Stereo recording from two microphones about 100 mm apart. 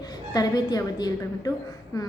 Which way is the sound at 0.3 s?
40° left (ahead or behind).